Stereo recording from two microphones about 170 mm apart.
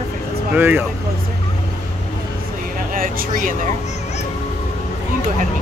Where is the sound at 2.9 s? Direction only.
55° right (ahead or behind).